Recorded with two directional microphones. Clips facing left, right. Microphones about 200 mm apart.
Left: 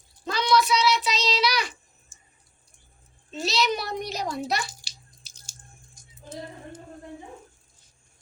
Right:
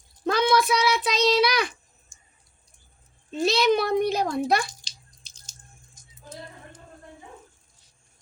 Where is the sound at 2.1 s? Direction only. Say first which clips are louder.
Left 1 dB; 5° left (ahead or behind).